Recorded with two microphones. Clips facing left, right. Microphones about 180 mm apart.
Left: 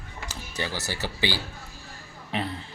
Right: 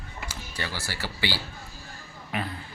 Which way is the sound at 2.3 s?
25° left (ahead or behind).